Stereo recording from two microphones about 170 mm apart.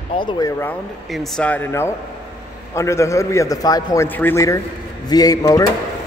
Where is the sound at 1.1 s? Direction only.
5° left (ahead or behind); by 4.0 s 20° left (ahead or behind).